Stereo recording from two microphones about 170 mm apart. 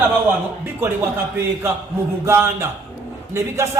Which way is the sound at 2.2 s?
15° right (ahead or behind).